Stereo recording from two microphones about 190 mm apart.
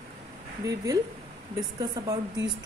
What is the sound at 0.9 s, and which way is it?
Speech, 20° right (ahead or behind).